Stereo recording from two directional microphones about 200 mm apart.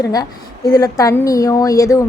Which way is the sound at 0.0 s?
20° left (ahead or behind).